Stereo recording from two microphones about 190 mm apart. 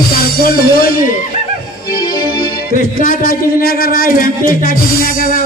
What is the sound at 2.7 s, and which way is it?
Speech, 50° left (ahead or behind).